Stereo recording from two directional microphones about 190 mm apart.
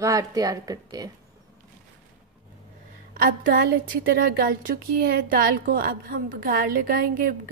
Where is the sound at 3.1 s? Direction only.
50° right (ahead or behind).